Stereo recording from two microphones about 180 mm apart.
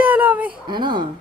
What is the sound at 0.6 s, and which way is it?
Speech, 25° right (ahead or behind).